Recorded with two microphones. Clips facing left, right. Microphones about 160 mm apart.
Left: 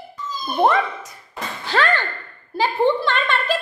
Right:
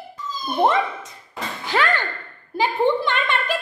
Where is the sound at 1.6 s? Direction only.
15° right (ahead or behind).